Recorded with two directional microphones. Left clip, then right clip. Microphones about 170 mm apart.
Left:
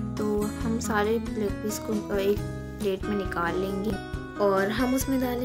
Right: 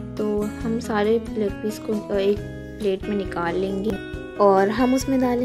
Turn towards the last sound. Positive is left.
turn(degrees=-25)  # may be behind; listen again after turning